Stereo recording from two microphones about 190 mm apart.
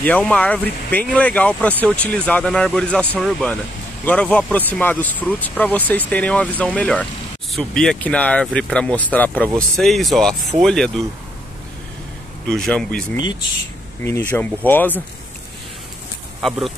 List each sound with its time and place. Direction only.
0.0 s speech: 5° left (ahead or behind)
12.4 s speech: 5° left (ahead or behind)
13.1 s speech: 20° left (ahead or behind)
14.3 s speech: 10° left (ahead or behind)
16.3 s speech: centre (ahead or behind)